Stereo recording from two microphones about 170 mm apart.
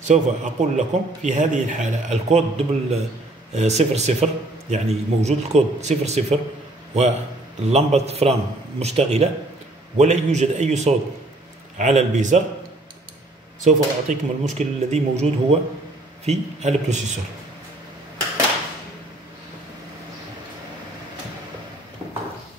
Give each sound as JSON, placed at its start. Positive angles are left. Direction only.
{"t": 0.1, "sound": "a man's voice", "side_deg": -45}
{"t": 7.7, "sound": "a man's voice", "side_deg": -40}
{"t": 13.7, "sound": "a man's voice", "side_deg": -45}